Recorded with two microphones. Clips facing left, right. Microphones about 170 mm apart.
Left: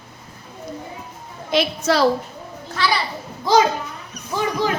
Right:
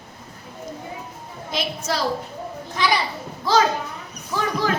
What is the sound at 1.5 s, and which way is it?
Speech, 70° left (ahead or behind).